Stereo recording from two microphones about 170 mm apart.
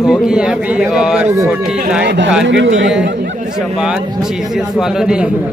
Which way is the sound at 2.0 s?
90° right.